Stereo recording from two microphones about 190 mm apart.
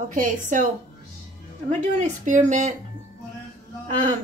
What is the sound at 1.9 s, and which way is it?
Speech, 40° right (ahead or behind).